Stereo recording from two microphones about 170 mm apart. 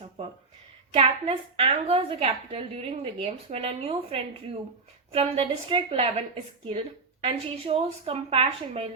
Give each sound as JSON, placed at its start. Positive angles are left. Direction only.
{"t": 0.9, "sound": "a woman's voice", "side_deg": -35}